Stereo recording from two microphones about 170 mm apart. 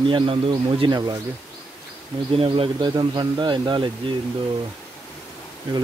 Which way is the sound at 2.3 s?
35° right (ahead or behind).